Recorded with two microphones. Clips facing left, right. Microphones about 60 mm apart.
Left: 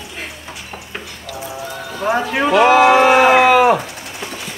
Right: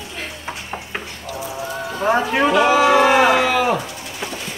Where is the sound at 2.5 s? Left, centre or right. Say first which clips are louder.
Left 5 dB; left.